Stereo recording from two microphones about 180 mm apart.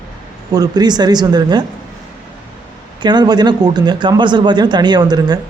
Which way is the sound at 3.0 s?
25° right (ahead or behind).